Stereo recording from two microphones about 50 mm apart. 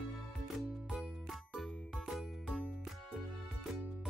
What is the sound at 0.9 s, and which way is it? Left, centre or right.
Music, centre.